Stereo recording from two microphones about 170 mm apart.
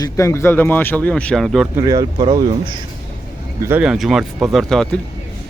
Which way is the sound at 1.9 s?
25° right (ahead or behind).